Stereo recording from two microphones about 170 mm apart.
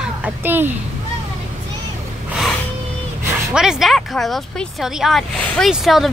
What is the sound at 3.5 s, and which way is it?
Speech, 5° right (ahead or behind).